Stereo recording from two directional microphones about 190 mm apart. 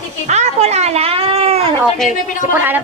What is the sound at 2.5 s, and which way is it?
Speech, 10° right (ahead or behind).